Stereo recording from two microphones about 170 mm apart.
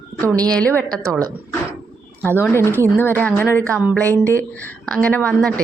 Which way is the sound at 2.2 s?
10° left (ahead or behind).